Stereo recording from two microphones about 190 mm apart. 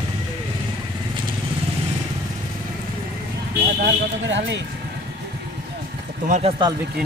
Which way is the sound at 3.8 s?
65° right (ahead or behind).